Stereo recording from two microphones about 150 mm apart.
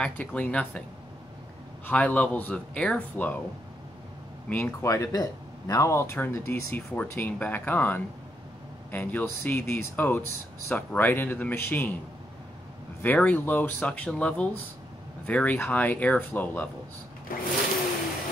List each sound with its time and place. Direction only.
0.0 s speech: 10° left (ahead or behind)
1.9 s speech: 10° left (ahead or behind)
4.5 s speech: 15° left (ahead or behind)
13.0 s speech: 10° left (ahead or behind)
17.3 s a sound: 70° left (ahead or behind)